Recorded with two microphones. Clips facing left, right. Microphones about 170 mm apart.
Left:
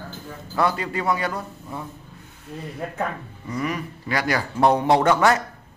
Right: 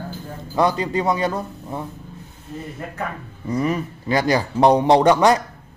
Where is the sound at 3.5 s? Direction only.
30° right (ahead or behind).